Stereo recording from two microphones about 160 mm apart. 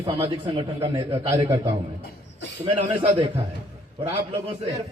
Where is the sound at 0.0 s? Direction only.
35° right (ahead or behind).